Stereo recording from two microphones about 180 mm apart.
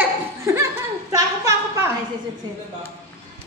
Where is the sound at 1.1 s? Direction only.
15° right (ahead or behind).